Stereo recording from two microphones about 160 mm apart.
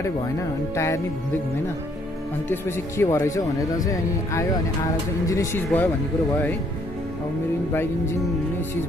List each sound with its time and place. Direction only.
0.7 s speech: 20° left (ahead or behind)
2.5 s speech: 15° left (ahead or behind)
7.7 s speech: 15° left (ahead or behind)